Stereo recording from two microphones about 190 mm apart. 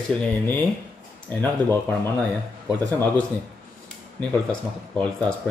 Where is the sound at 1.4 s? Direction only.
10° left (ahead or behind).